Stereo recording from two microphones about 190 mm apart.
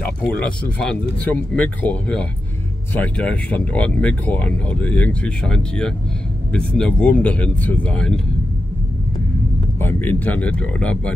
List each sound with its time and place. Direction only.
0.0 s speech: 5° left (ahead or behind)
9.8 s speech: 10° left (ahead or behind)